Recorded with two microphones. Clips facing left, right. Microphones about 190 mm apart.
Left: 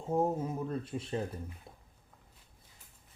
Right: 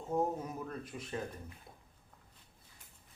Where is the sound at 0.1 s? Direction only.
30° left (ahead or behind).